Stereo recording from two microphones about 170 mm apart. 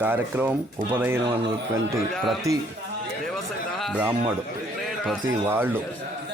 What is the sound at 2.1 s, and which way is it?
Speech, centre (ahead or behind).